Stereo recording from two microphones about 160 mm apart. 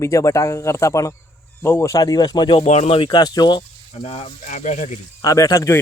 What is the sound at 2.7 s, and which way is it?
Speech, 40° left (ahead or behind).